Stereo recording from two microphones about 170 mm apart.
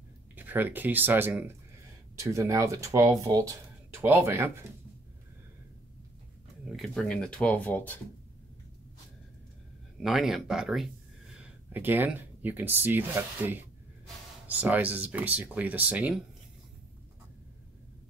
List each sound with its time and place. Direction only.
0.4 s speech: 10° right (ahead or behind)
6.6 s speech: 5° left (ahead or behind)
9.9 s speech: centre (ahead or behind)